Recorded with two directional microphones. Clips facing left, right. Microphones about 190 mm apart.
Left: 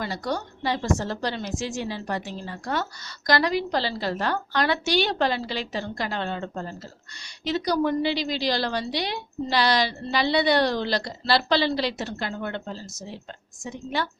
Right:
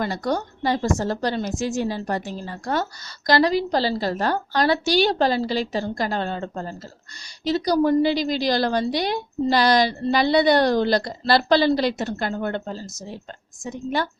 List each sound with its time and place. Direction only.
0.0 s a woman's voice: 50° right (ahead or behind)
3.2 s a woman's voice: 30° right (ahead or behind)